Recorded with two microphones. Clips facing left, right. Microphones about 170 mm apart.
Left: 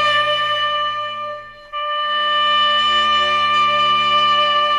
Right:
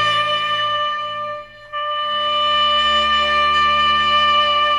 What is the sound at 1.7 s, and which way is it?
Music, centre (ahead or behind).